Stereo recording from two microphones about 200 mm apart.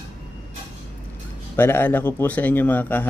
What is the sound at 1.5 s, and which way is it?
A man's voice, 10° left (ahead or behind).